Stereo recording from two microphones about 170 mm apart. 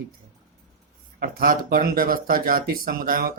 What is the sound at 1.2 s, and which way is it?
Speech, 55° right (ahead or behind).